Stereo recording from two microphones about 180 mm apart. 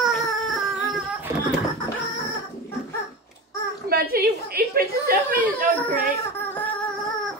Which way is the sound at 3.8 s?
60° right (ahead or behind).